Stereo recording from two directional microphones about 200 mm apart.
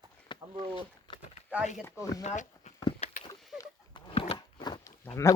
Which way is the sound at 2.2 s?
35° left (ahead or behind).